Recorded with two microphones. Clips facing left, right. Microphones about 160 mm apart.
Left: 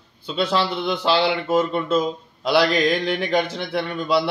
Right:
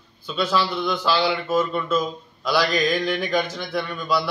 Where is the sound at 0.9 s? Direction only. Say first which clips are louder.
Left 3 dB; 65° left (ahead or behind).